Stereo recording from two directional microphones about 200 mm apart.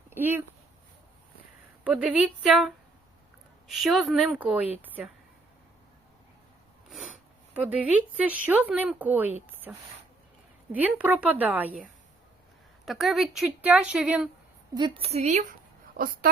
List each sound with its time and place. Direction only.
0.1 s speech: 10° right (ahead or behind)
1.8 s speech: 5° right (ahead or behind)
7.5 s speech: 5° right (ahead or behind)
12.8 s speech: centre (ahead or behind)
14.8 s a woman's voice: 25° right (ahead or behind)
16.0 s a woman's voice: 45° right (ahead or behind)